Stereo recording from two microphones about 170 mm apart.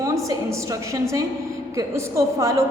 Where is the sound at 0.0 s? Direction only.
20° right (ahead or behind).